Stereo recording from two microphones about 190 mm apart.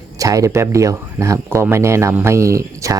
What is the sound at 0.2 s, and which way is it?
Speech, 15° right (ahead or behind).